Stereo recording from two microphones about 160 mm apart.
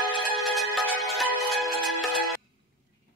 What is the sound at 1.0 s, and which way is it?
Music, centre (ahead or behind).